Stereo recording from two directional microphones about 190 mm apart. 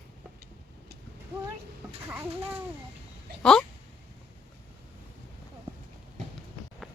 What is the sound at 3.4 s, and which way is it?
Speech, 5° left (ahead or behind).